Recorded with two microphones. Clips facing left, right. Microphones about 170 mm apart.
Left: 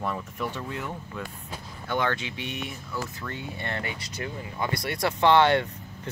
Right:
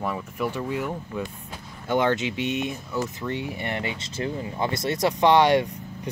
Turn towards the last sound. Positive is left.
turn(degrees=-15)  # may be behind; listen again after turning